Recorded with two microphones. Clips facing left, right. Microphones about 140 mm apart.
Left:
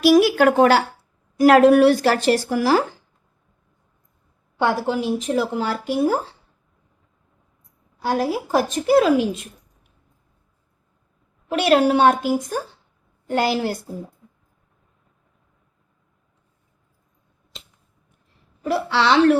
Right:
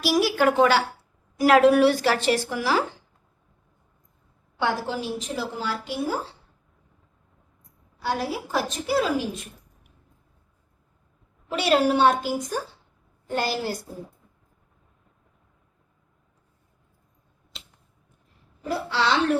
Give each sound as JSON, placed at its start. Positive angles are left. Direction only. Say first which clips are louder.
{"t": 0.0, "sound": "a woman's voice", "louder": "left 7 dB", "side_deg": 55}
{"t": 4.6, "sound": "a woman's voice", "louder": "left 6 dB", "side_deg": 55}
{"t": 8.5, "sound": "a woman's voice", "louder": "left 8 dB", "side_deg": 60}
{"t": 11.5, "sound": "a woman's voice", "louder": "left 4 dB", "side_deg": 55}
{"t": 13.3, "sound": "a woman's voice", "louder": "left 6 dB", "side_deg": 65}
{"t": 18.6, "sound": "a woman's voice", "louder": "left 5 dB", "side_deg": 75}